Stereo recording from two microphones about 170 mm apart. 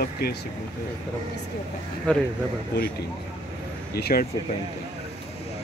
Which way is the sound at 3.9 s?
65° left (ahead or behind).